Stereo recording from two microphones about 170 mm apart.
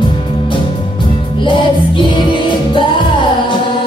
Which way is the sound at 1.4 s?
30° left (ahead or behind).